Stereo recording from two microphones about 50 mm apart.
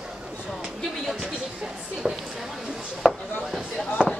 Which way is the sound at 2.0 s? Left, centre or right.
Centre.